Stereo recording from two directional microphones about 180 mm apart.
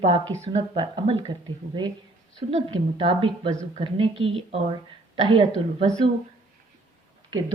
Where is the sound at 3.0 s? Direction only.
30° right (ahead or behind).